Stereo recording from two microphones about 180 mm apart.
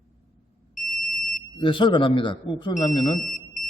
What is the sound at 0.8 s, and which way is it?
Smoke detector, 50° left (ahead or behind).